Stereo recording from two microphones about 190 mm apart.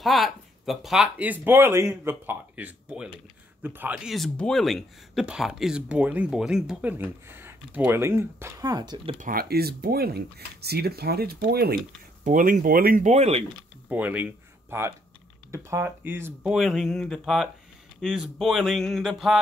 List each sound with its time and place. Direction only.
0.0 s speech: centre (ahead or behind); by 9.2 s 25° right (ahead or behind)
9.2 s speech: 50° right (ahead or behind)
13.8 s speech: 10° right (ahead or behind)